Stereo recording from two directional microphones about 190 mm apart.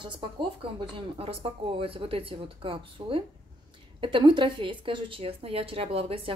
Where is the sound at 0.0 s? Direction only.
25° right (ahead or behind).